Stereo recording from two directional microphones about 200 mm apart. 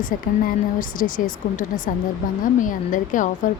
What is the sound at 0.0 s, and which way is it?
Speech, 40° left (ahead or behind).